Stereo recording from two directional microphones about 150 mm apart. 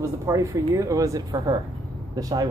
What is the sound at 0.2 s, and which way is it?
Speech, 20° right (ahead or behind).